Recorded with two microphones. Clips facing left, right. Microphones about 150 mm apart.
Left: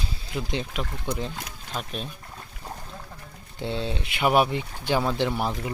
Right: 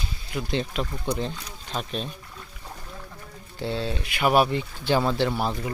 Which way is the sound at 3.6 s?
20° left (ahead or behind).